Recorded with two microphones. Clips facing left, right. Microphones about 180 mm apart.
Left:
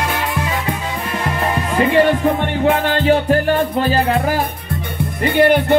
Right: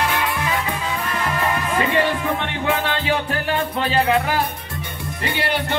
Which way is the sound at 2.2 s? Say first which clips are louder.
Left 8 dB; 50° left (ahead or behind).